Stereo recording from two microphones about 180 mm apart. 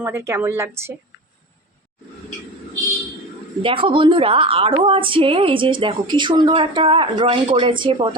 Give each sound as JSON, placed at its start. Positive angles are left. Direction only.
{"t": 0.0, "sound": "a woman's voice", "side_deg": -15}
{"t": 3.6, "sound": "a woman's voice", "side_deg": -30}